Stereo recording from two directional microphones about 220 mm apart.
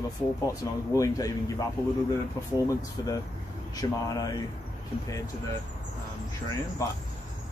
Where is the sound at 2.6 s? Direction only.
15° left (ahead or behind).